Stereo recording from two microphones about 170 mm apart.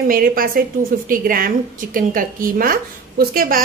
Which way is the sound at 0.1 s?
55° right (ahead or behind).